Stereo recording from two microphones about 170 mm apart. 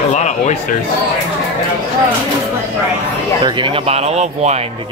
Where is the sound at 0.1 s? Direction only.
45° left (ahead or behind).